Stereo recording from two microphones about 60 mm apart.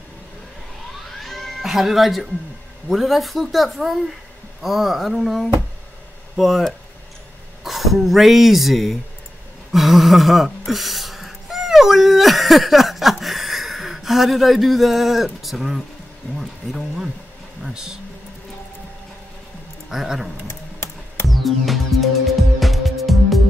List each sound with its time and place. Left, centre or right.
0.9 s music: centre
1.6 s speech: centre
9.7 s a sound: centre
16.3 s speech: centre
19.9 s speech: centre
21.3 s music: centre